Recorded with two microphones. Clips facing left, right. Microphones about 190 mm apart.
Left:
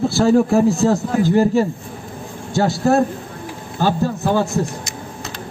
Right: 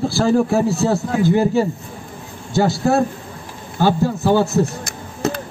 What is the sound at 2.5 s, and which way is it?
A man's voice, centre (ahead or behind).